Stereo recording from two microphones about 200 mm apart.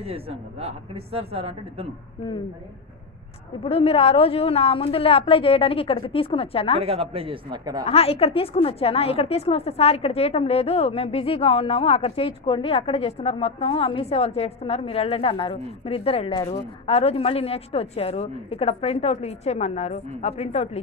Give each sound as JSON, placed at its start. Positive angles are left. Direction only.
{"t": 0.0, "sound": "speech", "side_deg": -30}
{"t": 3.6, "sound": "a woman's voice", "side_deg": 30}
{"t": 6.8, "sound": "speech", "side_deg": -30}
{"t": 7.8, "sound": "a woman's voice", "side_deg": 30}